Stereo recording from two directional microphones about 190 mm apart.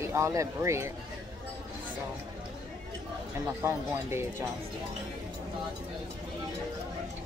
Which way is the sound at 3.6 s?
15° right (ahead or behind).